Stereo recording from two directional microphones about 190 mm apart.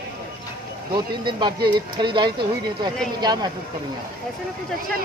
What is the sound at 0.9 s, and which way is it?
Speech, 25° right (ahead or behind).